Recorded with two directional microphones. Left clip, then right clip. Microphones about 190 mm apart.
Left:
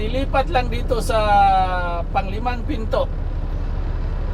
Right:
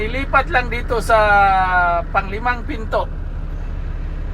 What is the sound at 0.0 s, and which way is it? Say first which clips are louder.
Speech: right 4 dB; centre (ahead or behind).